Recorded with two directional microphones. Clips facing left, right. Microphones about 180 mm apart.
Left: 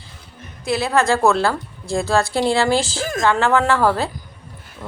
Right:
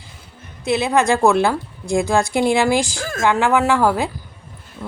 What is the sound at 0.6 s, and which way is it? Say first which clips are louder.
A woman's voice: right 1 dB; 20° right (ahead or behind).